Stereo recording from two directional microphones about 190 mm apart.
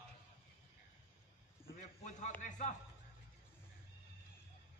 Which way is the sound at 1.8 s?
40° left (ahead or behind).